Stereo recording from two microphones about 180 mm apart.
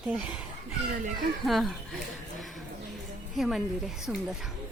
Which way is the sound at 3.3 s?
Centre (ahead or behind).